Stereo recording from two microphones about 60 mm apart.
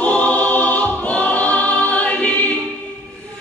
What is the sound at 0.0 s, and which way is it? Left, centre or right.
Choir, left.